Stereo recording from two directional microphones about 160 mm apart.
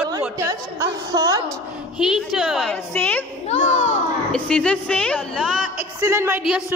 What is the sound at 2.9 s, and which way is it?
Speech, 10° left (ahead or behind).